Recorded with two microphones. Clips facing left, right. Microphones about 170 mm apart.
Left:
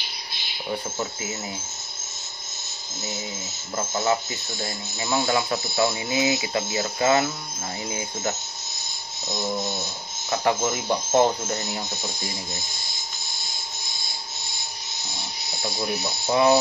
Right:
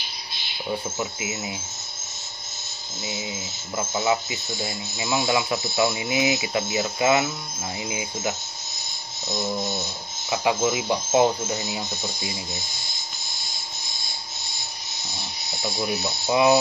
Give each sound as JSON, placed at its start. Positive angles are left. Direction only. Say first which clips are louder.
{"t": 3.7, "sound": "speech", "louder": "even", "side_deg": -10}
{"t": 10.3, "sound": "speech", "louder": "right 1 dB", "side_deg": -10}
{"t": 15.6, "sound": "speech", "louder": "right 1 dB", "side_deg": 0}
{"t": 16.3, "sound": "speech", "louder": "even", "side_deg": -10}